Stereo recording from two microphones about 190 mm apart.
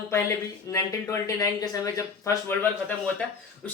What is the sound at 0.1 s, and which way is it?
Speech, 15° left (ahead or behind).